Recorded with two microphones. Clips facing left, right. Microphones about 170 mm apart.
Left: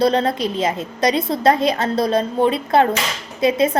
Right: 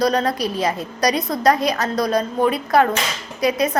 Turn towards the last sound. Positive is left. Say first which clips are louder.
# left 3 dB
turn(degrees=25)  # may be behind; listen again after turning